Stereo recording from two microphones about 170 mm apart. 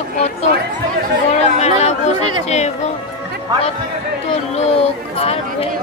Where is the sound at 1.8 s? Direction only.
40° left (ahead or behind).